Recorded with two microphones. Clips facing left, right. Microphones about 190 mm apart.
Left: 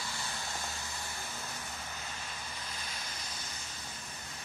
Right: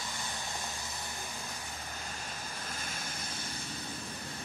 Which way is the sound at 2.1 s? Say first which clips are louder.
Right 2 dB; 45° right (ahead or behind).